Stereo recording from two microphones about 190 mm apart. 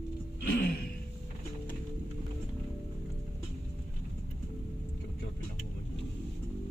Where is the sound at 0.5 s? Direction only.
50° left (ahead or behind).